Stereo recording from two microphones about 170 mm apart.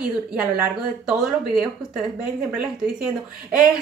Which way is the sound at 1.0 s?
5° right (ahead or behind).